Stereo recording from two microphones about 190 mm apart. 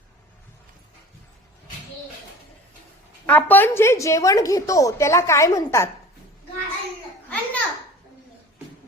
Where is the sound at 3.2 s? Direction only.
10° left (ahead or behind).